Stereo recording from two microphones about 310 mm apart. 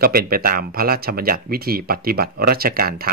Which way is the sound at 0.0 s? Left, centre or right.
Right.